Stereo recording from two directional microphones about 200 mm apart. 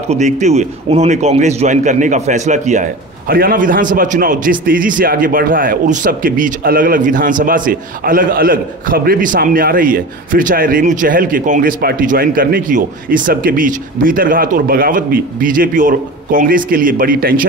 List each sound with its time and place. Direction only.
0.1 s a man's voice: 35° right (ahead or behind)